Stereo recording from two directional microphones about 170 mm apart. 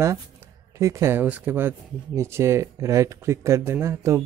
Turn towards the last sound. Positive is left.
turn(degrees=-15)  # may be behind; listen again after turning